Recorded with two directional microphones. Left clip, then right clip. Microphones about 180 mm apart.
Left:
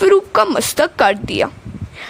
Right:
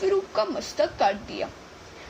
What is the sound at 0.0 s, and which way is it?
A woman's voice, 60° left (ahead or behind).